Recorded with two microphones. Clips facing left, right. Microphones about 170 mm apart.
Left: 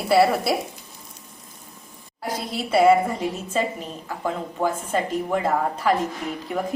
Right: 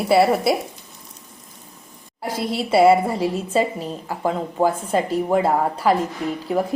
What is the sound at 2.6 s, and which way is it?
A woman's voice, 30° right (ahead or behind).